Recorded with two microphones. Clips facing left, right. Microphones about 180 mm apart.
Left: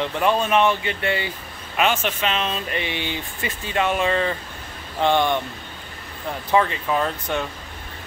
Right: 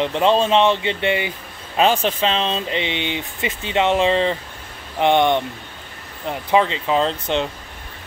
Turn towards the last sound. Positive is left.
turn(degrees=-20)  # may be behind; listen again after turning